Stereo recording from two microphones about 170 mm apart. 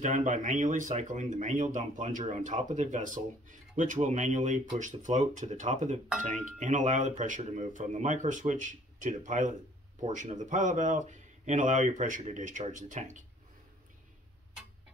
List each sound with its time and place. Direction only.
0.0 s speech: 45° right (ahead or behind)